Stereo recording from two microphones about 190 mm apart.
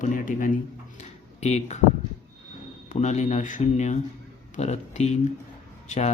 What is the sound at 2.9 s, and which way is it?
Speech, 40° left (ahead or behind).